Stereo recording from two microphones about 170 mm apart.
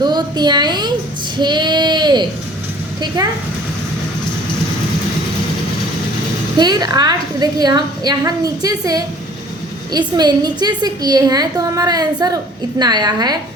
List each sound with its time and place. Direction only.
0.0 s a child's voice: 25° right (ahead or behind)
1.4 s a sound: 25° right (ahead or behind)
6.6 s a woman's voice: 25° right (ahead or behind)